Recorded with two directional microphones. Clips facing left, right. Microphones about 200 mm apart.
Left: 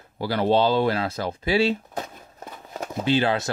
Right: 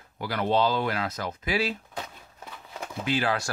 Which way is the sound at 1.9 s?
45° left (ahead or behind).